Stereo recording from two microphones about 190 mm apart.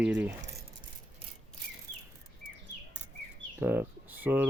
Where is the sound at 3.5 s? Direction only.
10° right (ahead or behind).